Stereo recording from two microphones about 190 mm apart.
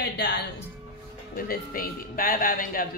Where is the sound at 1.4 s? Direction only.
50° left (ahead or behind).